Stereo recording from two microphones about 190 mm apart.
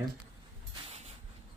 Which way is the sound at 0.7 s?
35° right (ahead or behind).